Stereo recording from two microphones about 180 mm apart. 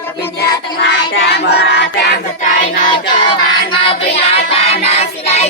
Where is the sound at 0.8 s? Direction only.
75° left (ahead or behind).